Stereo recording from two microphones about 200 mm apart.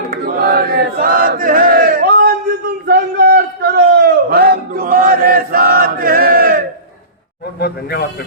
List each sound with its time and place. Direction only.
0.1 s chant: 50° right (ahead or behind)
2.8 s a sound: 50° right (ahead or behind)
7.6 s a man's voice: 55° left (ahead or behind)